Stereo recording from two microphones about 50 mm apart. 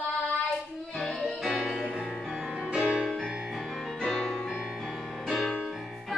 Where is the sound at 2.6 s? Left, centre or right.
Centre.